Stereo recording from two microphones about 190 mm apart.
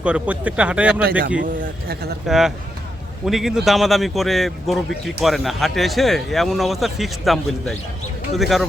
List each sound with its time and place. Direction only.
0.0 s speech: 5° right (ahead or behind)
1.4 s speech: 50° right (ahead or behind)
2.2 s speech: centre (ahead or behind)